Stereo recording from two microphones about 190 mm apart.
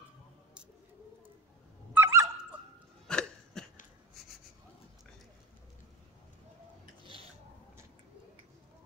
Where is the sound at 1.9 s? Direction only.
15° right (ahead or behind).